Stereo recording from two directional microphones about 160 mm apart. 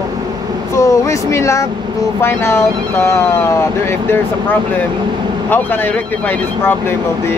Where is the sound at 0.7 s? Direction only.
20° left (ahead or behind).